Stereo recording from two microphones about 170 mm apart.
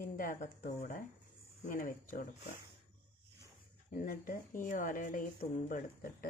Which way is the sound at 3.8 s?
50° left (ahead or behind).